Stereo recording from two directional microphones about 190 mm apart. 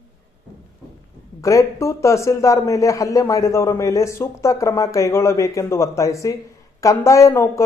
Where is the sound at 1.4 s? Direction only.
15° left (ahead or behind).